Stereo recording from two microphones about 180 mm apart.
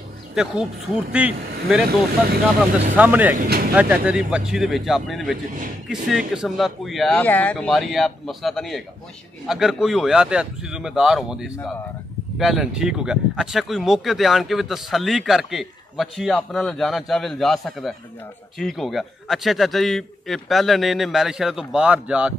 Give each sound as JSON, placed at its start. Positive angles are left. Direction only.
{"t": 0.3, "sound": "speech", "side_deg": -5}
{"t": 3.0, "sound": "speech", "side_deg": -10}
{"t": 3.3, "sound": "speech", "side_deg": -55}
{"t": 3.7, "sound": "speech", "side_deg": -5}